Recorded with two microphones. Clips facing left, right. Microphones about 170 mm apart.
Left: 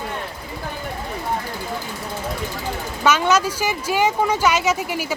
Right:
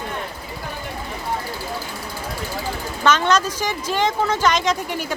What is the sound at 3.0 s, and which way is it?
Speech, 10° left (ahead or behind).